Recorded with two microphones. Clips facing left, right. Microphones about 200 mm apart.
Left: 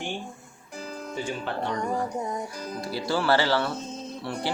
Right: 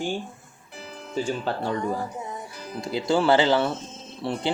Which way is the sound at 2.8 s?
20° right (ahead or behind).